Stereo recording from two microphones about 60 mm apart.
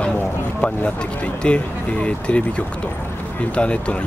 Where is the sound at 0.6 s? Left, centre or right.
Left.